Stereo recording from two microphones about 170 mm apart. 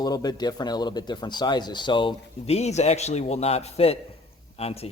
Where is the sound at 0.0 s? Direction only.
20° left (ahead or behind).